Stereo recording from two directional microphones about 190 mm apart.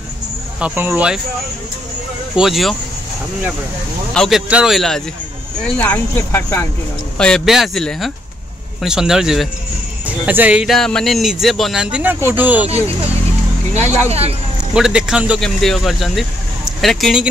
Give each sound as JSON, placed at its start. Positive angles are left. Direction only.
{"t": 0.6, "sound": "speech", "side_deg": -10}
{"t": 2.3, "sound": "speech", "side_deg": 0}
{"t": 4.1, "sound": "speech", "side_deg": 0}
{"t": 5.8, "sound": "speech", "side_deg": 10}
{"t": 13.7, "sound": "speech", "side_deg": -35}
{"t": 14.7, "sound": "speech", "side_deg": -5}